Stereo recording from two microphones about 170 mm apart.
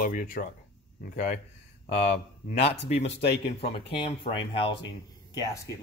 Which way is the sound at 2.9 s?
40° left (ahead or behind).